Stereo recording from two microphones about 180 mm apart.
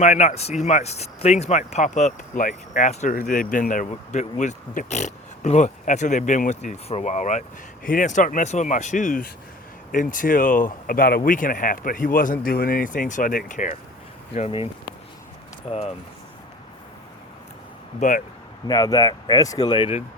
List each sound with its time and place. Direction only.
0.0 s speech: 40° left (ahead or behind)
14.3 s speech: 35° left (ahead or behind)
18.0 s speech: 40° left (ahead or behind)
18.7 s speech: 20° left (ahead or behind)